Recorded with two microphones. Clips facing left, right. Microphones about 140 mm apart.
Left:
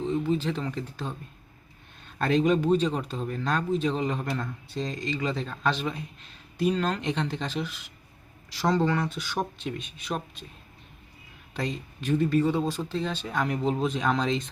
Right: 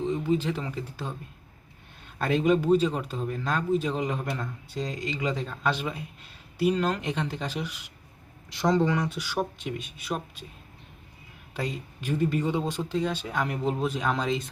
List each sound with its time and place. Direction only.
0.0 s speech: 10° right (ahead or behind)
2.1 s speech: 10° right (ahead or behind)
11.5 s speech: 10° right (ahead or behind)